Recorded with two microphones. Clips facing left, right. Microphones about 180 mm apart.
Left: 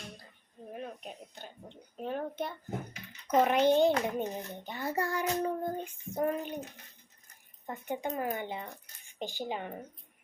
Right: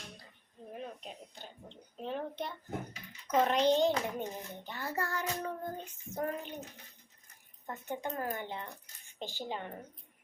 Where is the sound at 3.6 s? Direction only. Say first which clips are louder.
Left 3 dB; 55° left (ahead or behind).